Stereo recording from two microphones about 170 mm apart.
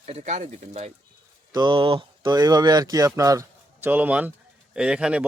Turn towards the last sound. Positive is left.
turn(degrees=-5)  # may be behind; listen again after turning